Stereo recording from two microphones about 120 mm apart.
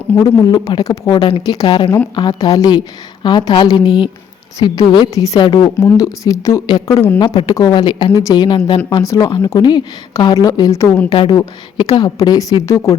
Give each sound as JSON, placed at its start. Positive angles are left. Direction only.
{"t": 0.2, "sound": "a woman's voice", "side_deg": 30}
{"t": 7.2, "sound": "a woman's voice", "side_deg": 35}
{"t": 11.3, "sound": "a woman's voice", "side_deg": 35}